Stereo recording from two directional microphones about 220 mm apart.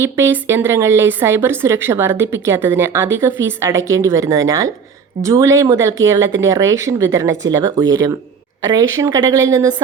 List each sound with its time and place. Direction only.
0.0 s a woman's voice: 10° right (ahead or behind)